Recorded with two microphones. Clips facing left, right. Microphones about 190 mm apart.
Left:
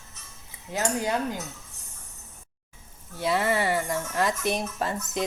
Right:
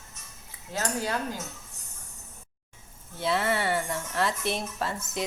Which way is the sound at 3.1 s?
15° left (ahead or behind).